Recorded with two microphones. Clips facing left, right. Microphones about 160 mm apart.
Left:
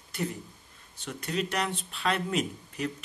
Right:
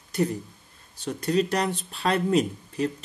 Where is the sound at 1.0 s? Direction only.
35° right (ahead or behind).